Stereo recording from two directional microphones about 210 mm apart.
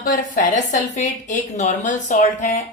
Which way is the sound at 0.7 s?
35° left (ahead or behind).